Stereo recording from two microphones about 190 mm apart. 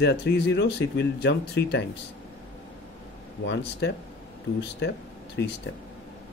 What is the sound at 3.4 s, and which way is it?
Speech, 70° left (ahead or behind).